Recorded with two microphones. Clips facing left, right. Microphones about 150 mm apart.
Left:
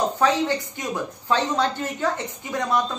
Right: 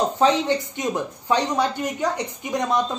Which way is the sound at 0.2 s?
20° right (ahead or behind).